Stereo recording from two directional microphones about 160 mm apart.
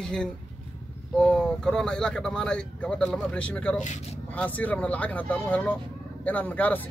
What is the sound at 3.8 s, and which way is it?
Speech, 50° left (ahead or behind).